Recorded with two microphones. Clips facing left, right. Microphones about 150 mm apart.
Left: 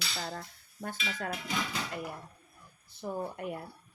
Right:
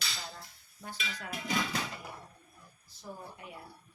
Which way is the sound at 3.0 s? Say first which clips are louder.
Left 10 dB; 60° left (ahead or behind).